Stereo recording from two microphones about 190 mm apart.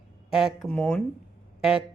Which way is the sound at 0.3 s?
Centre (ahead or behind).